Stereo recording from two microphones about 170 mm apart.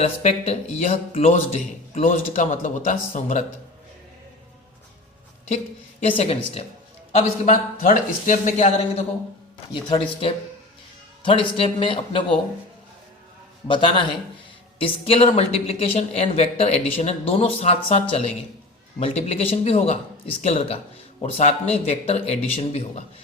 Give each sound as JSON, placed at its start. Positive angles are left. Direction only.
{"t": 0.0, "sound": "a man's voice", "side_deg": 40}
{"t": 6.0, "sound": "a man's voice", "side_deg": 35}
{"t": 9.7, "sound": "speech", "side_deg": 30}
{"t": 13.7, "sound": "a man's voice", "side_deg": 30}